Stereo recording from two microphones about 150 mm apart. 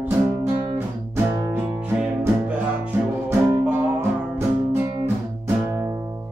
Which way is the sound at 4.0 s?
15° right (ahead or behind).